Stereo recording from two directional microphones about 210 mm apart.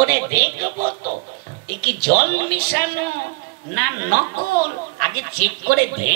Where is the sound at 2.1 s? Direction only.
45° right (ahead or behind).